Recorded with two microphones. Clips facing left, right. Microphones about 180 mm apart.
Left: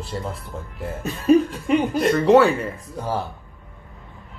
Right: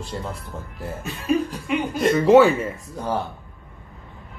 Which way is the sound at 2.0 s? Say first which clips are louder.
Right 2 dB; centre (ahead or behind).